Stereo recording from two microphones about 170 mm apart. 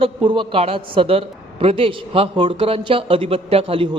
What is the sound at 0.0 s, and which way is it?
A man's voice, 30° right (ahead or behind).